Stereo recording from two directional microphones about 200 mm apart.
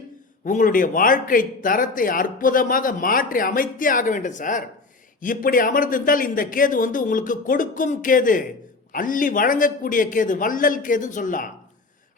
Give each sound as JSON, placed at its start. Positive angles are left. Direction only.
{"t": 0.4, "sound": "speech", "side_deg": 40}